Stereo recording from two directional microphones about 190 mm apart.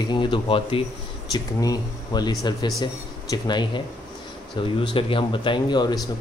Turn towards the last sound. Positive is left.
turn(degrees=20)  # may be behind; listen again after turning